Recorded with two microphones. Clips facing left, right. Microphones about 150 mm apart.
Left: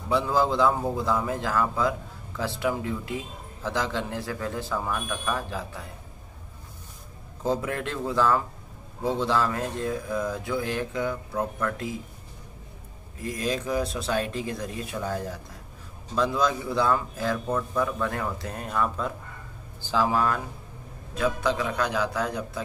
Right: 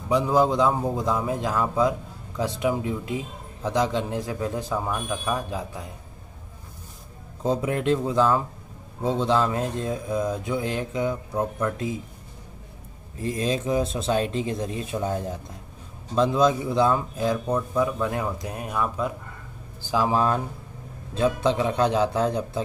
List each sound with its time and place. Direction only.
0.1 s a man's voice: 15° right (ahead or behind)
7.4 s speech: 20° right (ahead or behind)
13.2 s a man's voice: 25° right (ahead or behind)